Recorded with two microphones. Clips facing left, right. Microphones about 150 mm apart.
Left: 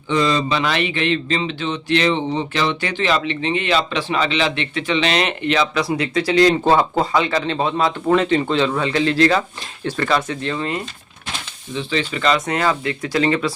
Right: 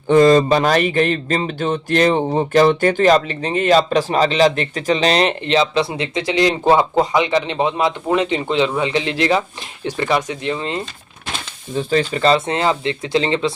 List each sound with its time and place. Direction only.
0.1 s speech: 45° right (ahead or behind); by 10.8 s 20° right (ahead or behind)
11.7 s speech: 45° right (ahead or behind); by 13.5 s 25° right (ahead or behind)